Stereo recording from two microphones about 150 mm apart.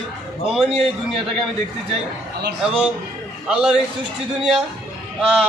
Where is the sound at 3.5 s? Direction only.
5° right (ahead or behind).